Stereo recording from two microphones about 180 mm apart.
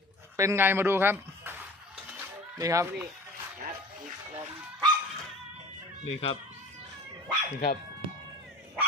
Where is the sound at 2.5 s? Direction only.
20° right (ahead or behind).